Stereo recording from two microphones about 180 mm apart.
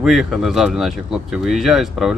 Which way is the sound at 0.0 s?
Centre (ahead or behind).